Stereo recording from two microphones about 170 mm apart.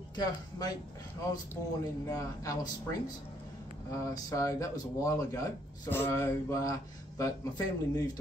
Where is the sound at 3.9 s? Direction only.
20° left (ahead or behind).